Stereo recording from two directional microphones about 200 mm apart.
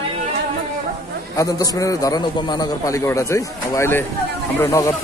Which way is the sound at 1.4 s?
20° left (ahead or behind).